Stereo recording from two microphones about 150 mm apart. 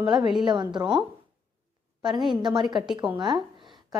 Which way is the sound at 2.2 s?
30° right (ahead or behind).